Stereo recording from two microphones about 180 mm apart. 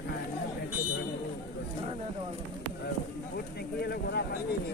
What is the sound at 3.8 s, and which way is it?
Speech, 65° left (ahead or behind).